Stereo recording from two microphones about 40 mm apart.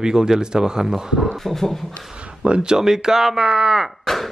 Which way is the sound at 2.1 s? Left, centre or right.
Right.